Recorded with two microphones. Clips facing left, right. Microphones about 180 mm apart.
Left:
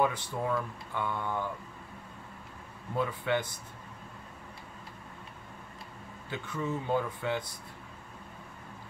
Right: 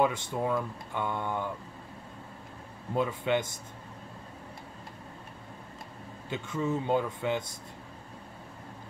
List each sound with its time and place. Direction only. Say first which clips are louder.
0.0 s speech: right 2 dB; 20° right (ahead or behind)
3.0 s speech: right 2 dB; 20° right (ahead or behind)
6.3 s speech: right 4 dB; 20° right (ahead or behind)